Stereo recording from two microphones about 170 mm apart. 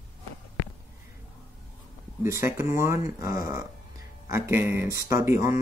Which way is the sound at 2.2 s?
15° right (ahead or behind).